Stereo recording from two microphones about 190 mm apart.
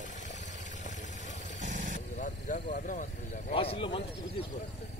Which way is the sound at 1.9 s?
40° left (ahead or behind).